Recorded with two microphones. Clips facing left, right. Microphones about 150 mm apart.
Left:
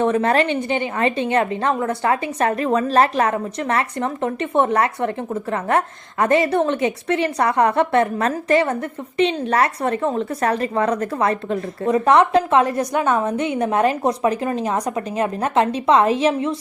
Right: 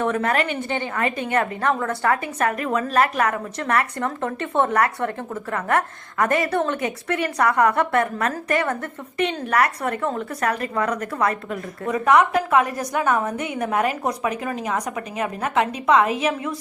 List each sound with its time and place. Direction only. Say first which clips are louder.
0.0 s a woman's voice: left 4 dB; 25° left (ahead or behind)